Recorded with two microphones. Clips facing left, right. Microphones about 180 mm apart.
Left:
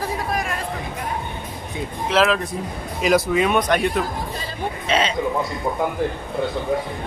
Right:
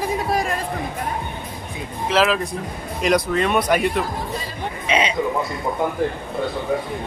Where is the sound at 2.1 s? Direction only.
Centre (ahead or behind).